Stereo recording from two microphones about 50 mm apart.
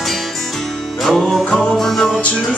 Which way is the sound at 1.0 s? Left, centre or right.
Centre.